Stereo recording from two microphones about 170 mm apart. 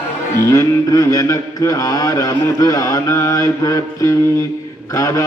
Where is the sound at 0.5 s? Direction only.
20° left (ahead or behind).